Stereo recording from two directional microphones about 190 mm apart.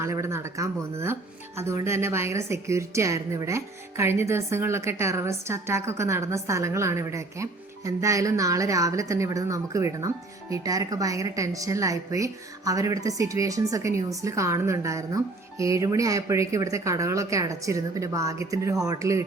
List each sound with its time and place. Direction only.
0.0 s a woman's voice: 15° right (ahead or behind)